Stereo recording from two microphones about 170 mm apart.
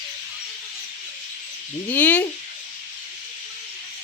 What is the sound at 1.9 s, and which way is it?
Speech, 10° left (ahead or behind).